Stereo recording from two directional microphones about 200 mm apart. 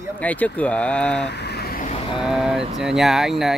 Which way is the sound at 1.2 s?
55° left (ahead or behind).